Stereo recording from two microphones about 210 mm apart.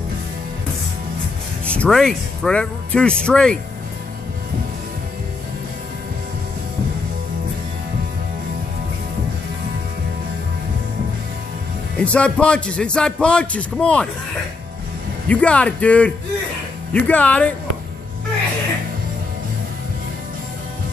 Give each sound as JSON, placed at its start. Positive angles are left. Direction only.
{"t": 1.7, "sound": "a man's voice", "side_deg": 5}
{"t": 12.0, "sound": "a man's voice", "side_deg": 5}
{"t": 15.2, "sound": "a man's voice", "side_deg": 5}